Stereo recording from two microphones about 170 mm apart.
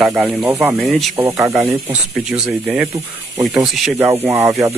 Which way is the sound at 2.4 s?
5° right (ahead or behind).